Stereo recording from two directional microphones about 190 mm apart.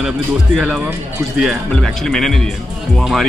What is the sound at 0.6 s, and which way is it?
Speech, centre (ahead or behind).